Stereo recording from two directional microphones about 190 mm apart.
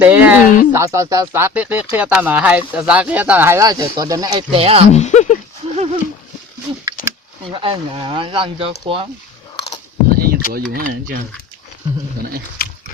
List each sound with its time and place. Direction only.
0.0 s a sound: 10° right (ahead or behind)
0.7 s speech: 15° right (ahead or behind)
4.9 s speech: 40° left (ahead or behind)
5.7 s horse: 35° right (ahead or behind)
7.0 s a sound: 50° left (ahead or behind)
7.4 s speech: 25° right (ahead or behind)
10.2 s speech: 55° right (ahead or behind)
12.6 s dog: 55° left (ahead or behind)